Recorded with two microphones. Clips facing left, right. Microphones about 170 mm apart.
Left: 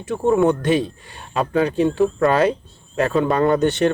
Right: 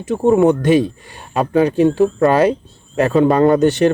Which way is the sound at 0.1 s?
20° right (ahead or behind).